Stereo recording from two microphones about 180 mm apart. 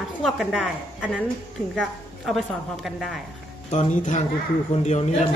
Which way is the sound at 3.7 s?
40° left (ahead or behind).